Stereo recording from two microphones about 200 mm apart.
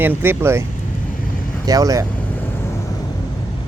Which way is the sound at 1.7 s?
15° right (ahead or behind).